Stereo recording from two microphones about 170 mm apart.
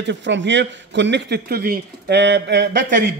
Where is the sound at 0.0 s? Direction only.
90° right.